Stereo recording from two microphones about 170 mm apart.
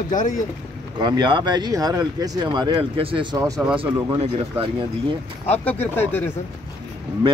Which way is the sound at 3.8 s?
35° right (ahead or behind).